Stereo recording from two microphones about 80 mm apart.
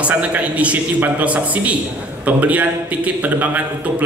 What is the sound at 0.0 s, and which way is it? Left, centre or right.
A man's voice, centre.